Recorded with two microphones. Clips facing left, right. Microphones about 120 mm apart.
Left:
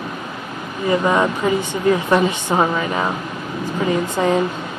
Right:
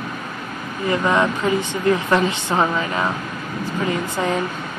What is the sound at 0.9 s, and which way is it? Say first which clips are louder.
A woman's voice: left 2 dB; 15° left (ahead or behind).